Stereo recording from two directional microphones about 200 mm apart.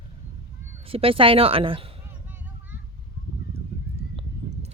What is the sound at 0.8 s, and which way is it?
Speech, 25° right (ahead or behind).